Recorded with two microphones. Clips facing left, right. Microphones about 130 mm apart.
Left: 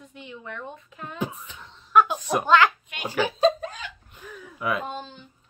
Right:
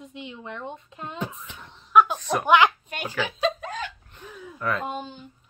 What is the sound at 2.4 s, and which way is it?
Speech, 15° right (ahead or behind).